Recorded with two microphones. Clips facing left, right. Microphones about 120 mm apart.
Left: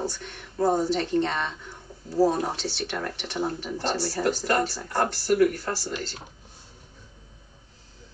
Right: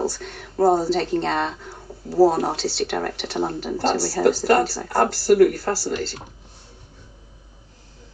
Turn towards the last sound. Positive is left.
turn(degrees=-35)  # may be behind; listen again after turning